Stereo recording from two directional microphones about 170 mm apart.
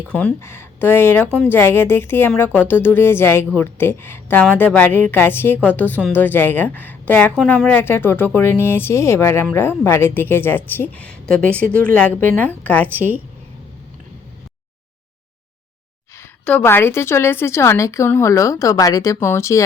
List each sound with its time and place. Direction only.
0.1 s a woman's voice: 5° left (ahead or behind)
16.5 s a woman's voice: 10° left (ahead or behind)